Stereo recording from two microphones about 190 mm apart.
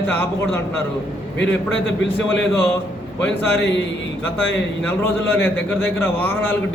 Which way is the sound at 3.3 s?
70° left (ahead or behind).